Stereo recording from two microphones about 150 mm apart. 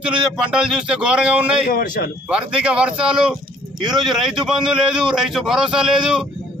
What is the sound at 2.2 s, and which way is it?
A man's voice, 5° right (ahead or behind).